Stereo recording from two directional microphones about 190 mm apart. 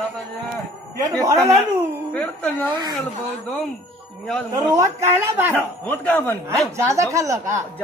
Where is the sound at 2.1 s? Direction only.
5° left (ahead or behind).